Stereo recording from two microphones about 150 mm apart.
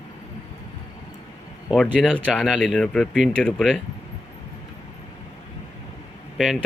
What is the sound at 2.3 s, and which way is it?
Speech, centre (ahead or behind).